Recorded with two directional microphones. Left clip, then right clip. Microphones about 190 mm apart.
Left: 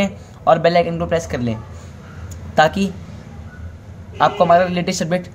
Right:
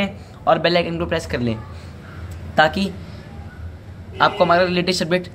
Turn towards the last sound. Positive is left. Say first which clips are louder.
# right 1 dB
turn(degrees=20)  # may be behind; listen again after turning